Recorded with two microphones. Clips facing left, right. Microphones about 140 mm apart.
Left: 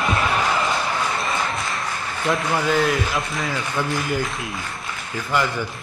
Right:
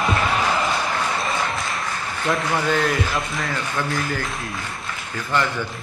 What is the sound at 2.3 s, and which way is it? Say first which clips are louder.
A man's voice: left 1 dB; centre (ahead or behind).